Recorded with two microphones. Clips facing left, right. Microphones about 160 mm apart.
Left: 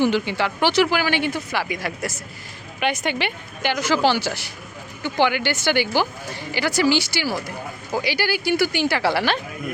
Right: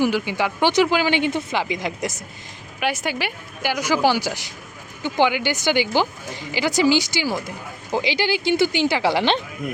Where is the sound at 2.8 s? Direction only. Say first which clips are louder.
Left 1 dB; 5° right (ahead or behind).